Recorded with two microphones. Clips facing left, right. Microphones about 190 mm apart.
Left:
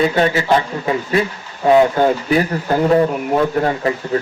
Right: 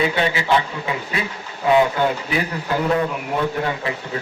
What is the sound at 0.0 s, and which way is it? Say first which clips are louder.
A man's voice: left 5 dB; 45° left (ahead or behind).